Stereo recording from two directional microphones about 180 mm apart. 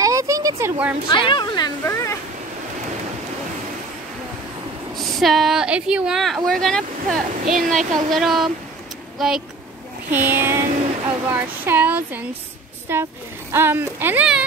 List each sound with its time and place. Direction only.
0.0 s a sound: 15° right (ahead or behind)
1.0 s speech: 25° left (ahead or behind)
4.9 s speech: centre (ahead or behind)